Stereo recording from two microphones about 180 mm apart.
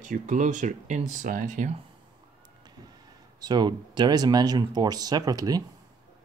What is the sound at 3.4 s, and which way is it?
Speech, 25° right (ahead or behind).